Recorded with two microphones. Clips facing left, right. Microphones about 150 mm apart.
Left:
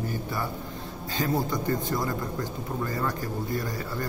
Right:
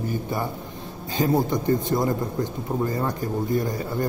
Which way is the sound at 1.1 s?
20° right (ahead or behind).